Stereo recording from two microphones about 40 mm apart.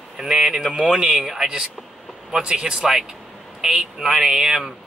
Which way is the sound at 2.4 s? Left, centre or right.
Right.